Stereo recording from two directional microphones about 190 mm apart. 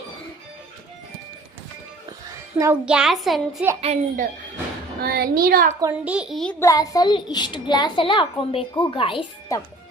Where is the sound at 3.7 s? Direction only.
30° right (ahead or behind).